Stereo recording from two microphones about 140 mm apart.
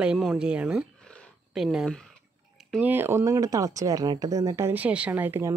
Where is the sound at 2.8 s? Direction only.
15° right (ahead or behind).